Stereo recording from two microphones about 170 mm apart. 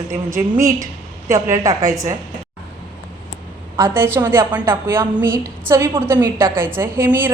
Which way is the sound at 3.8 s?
15° right (ahead or behind).